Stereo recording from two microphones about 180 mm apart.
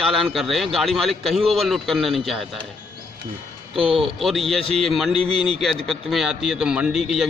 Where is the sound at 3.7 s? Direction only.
30° right (ahead or behind).